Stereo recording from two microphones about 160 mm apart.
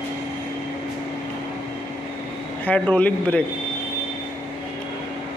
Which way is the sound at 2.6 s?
10° left (ahead or behind).